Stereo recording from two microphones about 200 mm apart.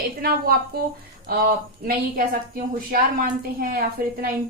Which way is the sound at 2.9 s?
45° right (ahead or behind).